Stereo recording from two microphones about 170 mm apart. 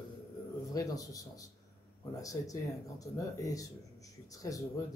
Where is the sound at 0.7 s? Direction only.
20° left (ahead or behind).